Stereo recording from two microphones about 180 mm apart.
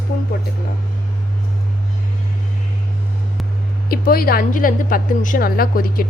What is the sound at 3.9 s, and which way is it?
A woman's voice, 55° left (ahead or behind).